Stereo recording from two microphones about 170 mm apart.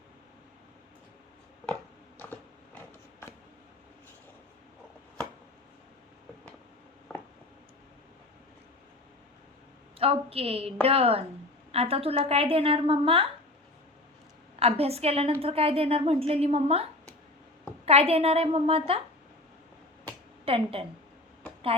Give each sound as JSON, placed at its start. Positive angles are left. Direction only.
{"t": 1.6, "sound": "a sound", "side_deg": 10}
{"t": 7.1, "sound": "a sound", "side_deg": 0}
{"t": 10.0, "sound": "a woman's voice", "side_deg": -35}
{"t": 14.6, "sound": "a woman's voice", "side_deg": -35}
{"t": 17.8, "sound": "a woman's voice", "side_deg": -35}
{"t": 20.4, "sound": "a woman's voice", "side_deg": -35}